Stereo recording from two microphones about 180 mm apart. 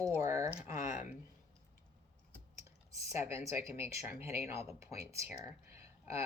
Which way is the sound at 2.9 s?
15° right (ahead or behind).